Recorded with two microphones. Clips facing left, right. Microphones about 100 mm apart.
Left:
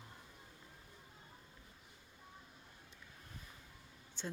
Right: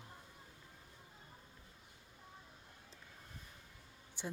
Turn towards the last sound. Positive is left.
turn(degrees=-15)  # may be behind; listen again after turning